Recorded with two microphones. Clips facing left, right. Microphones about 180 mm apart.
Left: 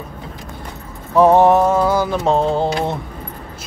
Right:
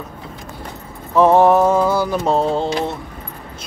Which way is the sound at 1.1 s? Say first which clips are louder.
Left 1 dB; 15° left (ahead or behind).